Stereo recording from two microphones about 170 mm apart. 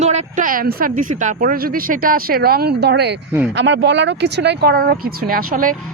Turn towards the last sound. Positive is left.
turn(degrees=-55)  # may be behind; listen again after turning